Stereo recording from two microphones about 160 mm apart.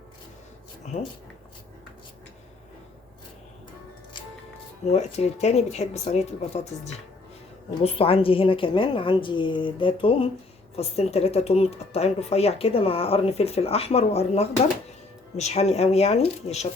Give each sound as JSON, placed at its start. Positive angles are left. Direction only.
{"t": 4.9, "sound": "speech", "side_deg": 40}
{"t": 7.9, "sound": "speech", "side_deg": 35}